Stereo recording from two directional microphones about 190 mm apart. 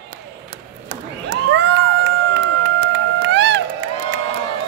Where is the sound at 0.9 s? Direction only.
65° right (ahead or behind).